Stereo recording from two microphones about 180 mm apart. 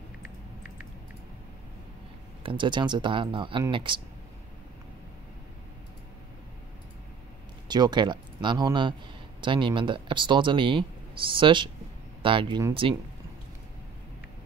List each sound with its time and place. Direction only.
2.4 s speech: 25° right (ahead or behind)
7.6 s speech: 25° right (ahead or behind)